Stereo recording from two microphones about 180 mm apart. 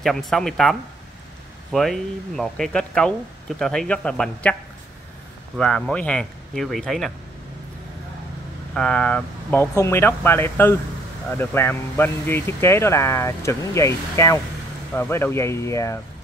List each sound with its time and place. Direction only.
0.0 s speech: centre (ahead or behind)
5.6 s speech: 5° left (ahead or behind)
8.7 s speech: 5° left (ahead or behind)